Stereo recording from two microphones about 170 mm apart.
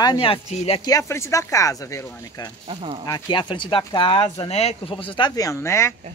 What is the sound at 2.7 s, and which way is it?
Speech, 35° right (ahead or behind).